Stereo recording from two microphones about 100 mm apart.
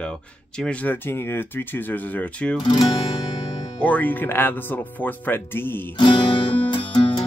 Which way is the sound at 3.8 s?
15° left (ahead or behind).